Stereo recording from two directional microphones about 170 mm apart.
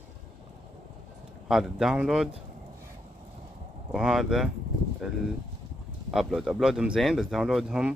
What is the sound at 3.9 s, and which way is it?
Speech, 5° right (ahead or behind).